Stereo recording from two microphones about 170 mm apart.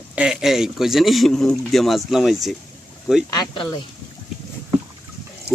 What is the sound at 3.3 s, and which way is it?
Speech, 25° left (ahead or behind).